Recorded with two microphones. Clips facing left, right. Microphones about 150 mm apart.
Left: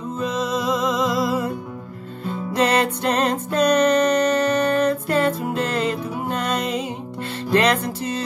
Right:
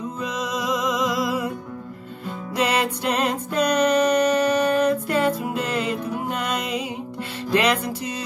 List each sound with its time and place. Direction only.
0.4 s music: 15° right (ahead or behind)
2.5 s music: 10° right (ahead or behind)